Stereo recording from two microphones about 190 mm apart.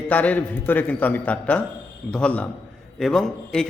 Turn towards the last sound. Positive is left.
turn(degrees=5)  # may be behind; listen again after turning